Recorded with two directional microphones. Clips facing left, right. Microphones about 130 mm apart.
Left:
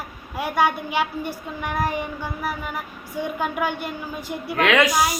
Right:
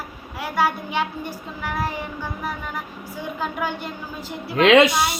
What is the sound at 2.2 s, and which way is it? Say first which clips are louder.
Child singing: left 1 dB; 10° left (ahead or behind).